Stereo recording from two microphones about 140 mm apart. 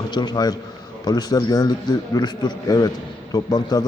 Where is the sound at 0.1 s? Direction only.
30° left (ahead or behind).